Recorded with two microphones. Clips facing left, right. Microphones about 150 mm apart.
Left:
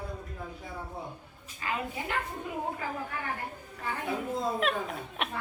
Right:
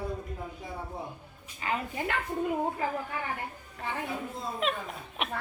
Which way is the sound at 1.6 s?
25° right (ahead or behind).